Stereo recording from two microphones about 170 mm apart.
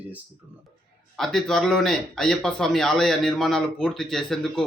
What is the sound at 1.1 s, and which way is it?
Speech, centre (ahead or behind).